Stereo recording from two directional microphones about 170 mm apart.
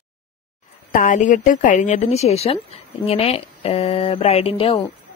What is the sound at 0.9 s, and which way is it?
A woman's voice, 50° left (ahead or behind).